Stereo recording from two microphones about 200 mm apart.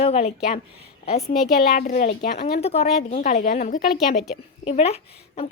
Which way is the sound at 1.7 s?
45° left (ahead or behind).